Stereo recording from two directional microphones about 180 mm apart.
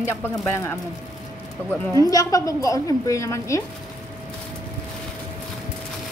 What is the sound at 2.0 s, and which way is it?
Speech, 20° left (ahead or behind).